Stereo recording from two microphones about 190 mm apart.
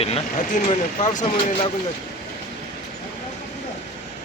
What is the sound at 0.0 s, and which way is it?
Speech, 35° left (ahead or behind).